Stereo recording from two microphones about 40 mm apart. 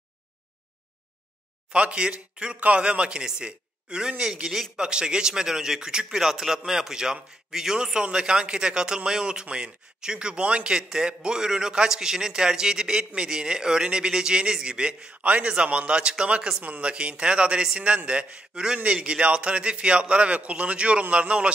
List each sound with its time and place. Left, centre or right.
1.7 s a man's voice: right
15.2 s a man's voice: right
16.6 s speech: right
16.9 s a man's voice: right